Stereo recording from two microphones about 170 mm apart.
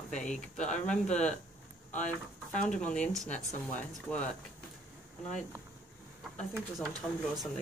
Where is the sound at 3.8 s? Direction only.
5° left (ahead or behind).